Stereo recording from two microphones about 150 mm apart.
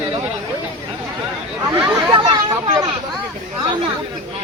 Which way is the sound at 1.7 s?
10° right (ahead or behind).